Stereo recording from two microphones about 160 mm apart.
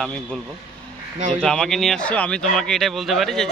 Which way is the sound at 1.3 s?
5° left (ahead or behind).